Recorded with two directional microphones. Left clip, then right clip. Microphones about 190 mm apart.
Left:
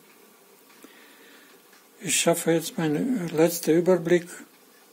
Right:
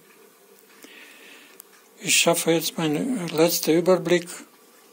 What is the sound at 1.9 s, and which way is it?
Speech, 20° left (ahead or behind).